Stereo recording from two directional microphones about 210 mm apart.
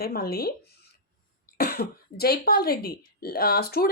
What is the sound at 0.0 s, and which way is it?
A woman's voice, 45° left (ahead or behind).